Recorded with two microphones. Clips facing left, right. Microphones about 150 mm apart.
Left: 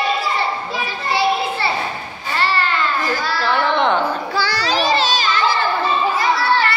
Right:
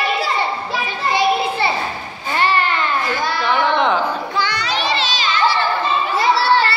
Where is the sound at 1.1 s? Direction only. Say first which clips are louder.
Right 1 dB; 15° right (ahead or behind).